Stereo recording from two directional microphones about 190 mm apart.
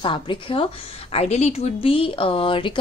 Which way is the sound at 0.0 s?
25° left (ahead or behind).